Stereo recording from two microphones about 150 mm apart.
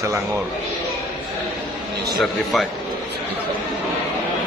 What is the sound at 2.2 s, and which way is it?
Speech, centre (ahead or behind).